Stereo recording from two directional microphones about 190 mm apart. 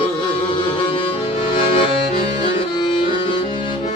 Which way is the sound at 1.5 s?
30° left (ahead or behind).